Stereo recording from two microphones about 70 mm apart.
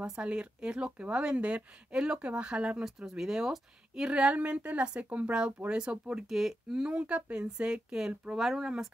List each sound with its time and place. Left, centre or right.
0.0 s speech: centre
6.2 s speech: centre
6.9 s speech: right; by 8.8 s centre